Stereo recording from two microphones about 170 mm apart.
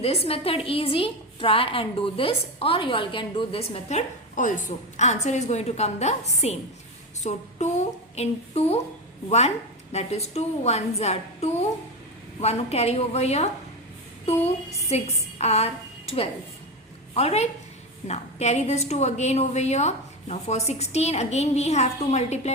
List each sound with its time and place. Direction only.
0.0 s a woman's voice: 35° left (ahead or behind)
9.9 s a woman's voice: 40° left (ahead or behind)
14.8 s a woman's voice: 40° left (ahead or behind)